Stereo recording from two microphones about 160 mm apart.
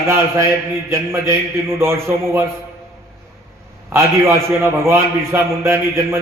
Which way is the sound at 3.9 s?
15° right (ahead or behind).